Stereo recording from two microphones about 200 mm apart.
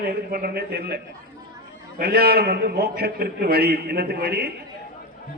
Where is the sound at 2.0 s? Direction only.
50° right (ahead or behind).